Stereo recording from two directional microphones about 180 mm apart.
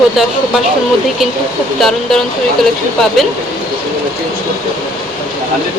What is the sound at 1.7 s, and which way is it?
Speech, centre (ahead or behind).